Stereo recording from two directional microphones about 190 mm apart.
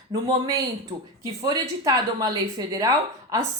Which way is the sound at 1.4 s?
20° right (ahead or behind).